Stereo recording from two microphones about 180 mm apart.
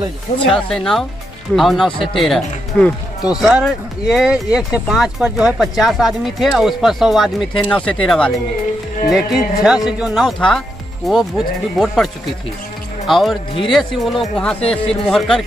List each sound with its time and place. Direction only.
0.5 s speech: 5° left (ahead or behind)
14.6 s speech: 35° left (ahead or behind)
15.0 s speech: 5° left (ahead or behind)